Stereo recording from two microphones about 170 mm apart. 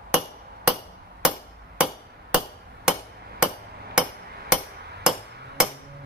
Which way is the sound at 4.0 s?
5° right (ahead or behind).